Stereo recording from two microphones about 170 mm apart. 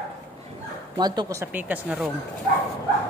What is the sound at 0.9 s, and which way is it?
Speech, 25° right (ahead or behind).